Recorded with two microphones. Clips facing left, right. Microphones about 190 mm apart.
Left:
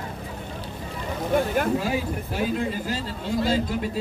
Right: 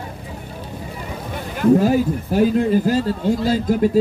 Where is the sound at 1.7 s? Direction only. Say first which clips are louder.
Right 9 dB; 45° right (ahead or behind).